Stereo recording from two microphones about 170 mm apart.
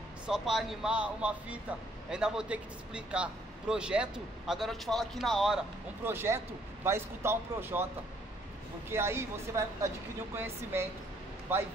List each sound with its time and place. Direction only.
0.3 s speech: centre (ahead or behind)
6.0 s speech: 15° right (ahead or behind)
8.9 s speech: 15° right (ahead or behind)